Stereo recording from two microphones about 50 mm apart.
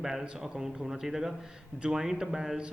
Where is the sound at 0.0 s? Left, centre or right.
Centre.